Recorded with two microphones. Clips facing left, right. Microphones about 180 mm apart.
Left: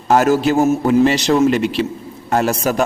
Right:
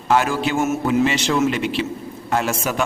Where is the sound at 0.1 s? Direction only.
40° left (ahead or behind).